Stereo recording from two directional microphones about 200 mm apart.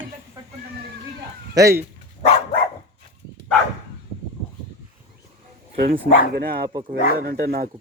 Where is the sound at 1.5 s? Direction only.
15° right (ahead or behind).